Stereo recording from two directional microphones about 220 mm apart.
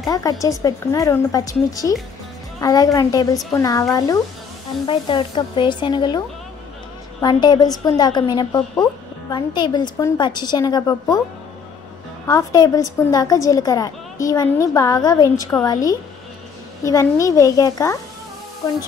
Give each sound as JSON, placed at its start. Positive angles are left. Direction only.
{"t": 0.1, "sound": "a woman's voice", "side_deg": 15}
{"t": 4.8, "sound": "a woman's voice", "side_deg": 20}
{"t": 12.3, "sound": "a woman's voice", "side_deg": 15}